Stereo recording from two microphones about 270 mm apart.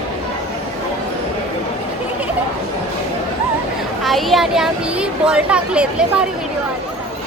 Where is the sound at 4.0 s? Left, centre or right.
Centre.